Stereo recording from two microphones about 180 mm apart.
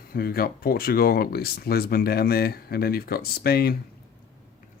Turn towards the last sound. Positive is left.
turn(degrees=60)  # may be behind; listen again after turning